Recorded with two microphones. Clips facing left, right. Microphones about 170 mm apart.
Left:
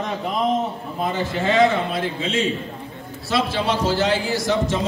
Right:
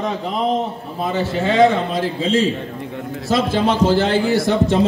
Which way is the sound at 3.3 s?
50° right (ahead or behind).